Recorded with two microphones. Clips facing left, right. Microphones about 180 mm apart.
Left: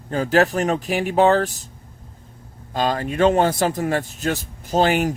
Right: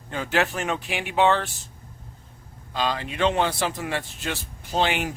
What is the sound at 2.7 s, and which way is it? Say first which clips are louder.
Speech: left 5 dB; 45° left (ahead or behind).